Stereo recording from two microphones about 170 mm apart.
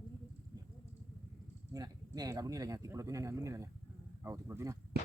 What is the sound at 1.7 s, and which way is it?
Speech, 20° right (ahead or behind).